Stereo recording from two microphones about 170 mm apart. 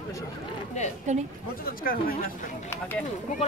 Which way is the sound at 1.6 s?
55° left (ahead or behind).